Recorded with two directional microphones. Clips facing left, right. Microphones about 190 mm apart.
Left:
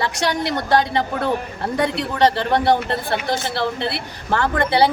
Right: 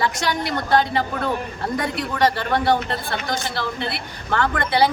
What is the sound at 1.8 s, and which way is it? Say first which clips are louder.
A woman's voice: left 4 dB; 30° left (ahead or behind).